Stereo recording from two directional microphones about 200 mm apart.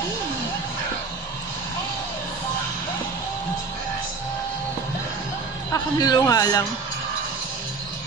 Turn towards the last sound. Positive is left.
turn(degrees=20)  # may be behind; listen again after turning